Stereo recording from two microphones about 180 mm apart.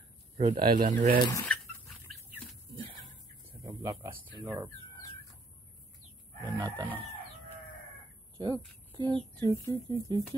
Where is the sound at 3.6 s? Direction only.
20° right (ahead or behind).